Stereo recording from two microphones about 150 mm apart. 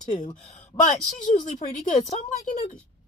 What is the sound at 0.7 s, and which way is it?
Speech, 30° left (ahead or behind).